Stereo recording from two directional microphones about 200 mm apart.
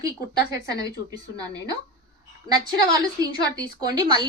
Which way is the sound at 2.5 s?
20° right (ahead or behind).